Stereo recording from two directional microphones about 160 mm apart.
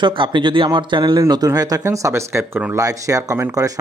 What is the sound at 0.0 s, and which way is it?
Speech, 30° right (ahead or behind).